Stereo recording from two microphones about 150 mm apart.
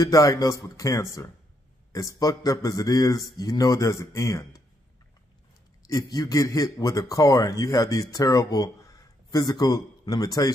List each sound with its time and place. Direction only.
0.0 s a man's voice: 20° left (ahead or behind)
5.9 s a man's voice: 25° left (ahead or behind)